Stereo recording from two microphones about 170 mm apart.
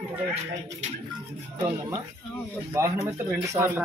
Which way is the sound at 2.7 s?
15° right (ahead or behind).